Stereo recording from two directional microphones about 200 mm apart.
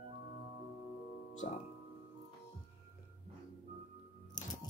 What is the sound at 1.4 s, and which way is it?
Speech, 40° left (ahead or behind).